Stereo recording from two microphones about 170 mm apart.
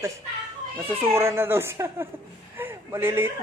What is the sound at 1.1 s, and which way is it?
Speech, 15° right (ahead or behind).